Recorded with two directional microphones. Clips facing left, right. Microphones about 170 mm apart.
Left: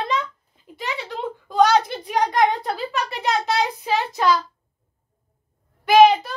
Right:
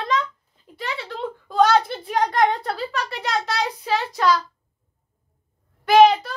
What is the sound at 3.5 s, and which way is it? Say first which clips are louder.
Child singing: left 2 dB; 20° left (ahead or behind).